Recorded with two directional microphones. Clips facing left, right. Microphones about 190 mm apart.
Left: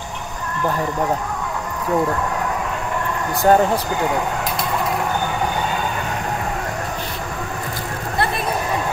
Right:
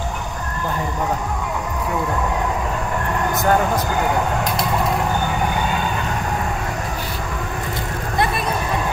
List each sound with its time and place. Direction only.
3.3 s speech: 30° left (ahead or behind)